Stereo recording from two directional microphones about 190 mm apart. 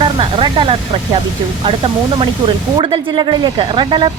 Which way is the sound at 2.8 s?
25° right (ahead or behind).